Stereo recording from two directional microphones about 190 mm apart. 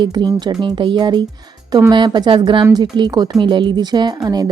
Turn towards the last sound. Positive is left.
turn(degrees=-20)  # may be behind; listen again after turning